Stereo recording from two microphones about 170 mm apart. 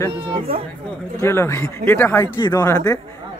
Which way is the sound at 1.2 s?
15° left (ahead or behind).